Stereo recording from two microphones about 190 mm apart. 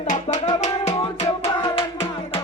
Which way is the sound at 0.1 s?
40° left (ahead or behind).